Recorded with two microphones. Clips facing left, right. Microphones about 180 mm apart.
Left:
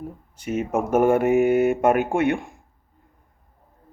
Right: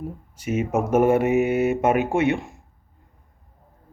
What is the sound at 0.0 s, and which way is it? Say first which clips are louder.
Speech: right 2 dB; 5° right (ahead or behind).